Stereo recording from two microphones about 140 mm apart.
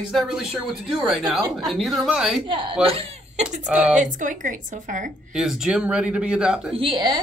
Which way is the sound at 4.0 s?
65° right (ahead or behind).